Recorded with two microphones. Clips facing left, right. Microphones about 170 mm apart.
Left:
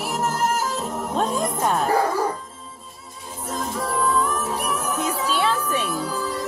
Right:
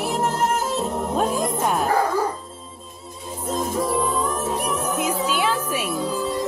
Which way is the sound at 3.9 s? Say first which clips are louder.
Even; 25° right (ahead or behind).